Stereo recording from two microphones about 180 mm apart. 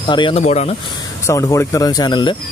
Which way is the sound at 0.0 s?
30° left (ahead or behind).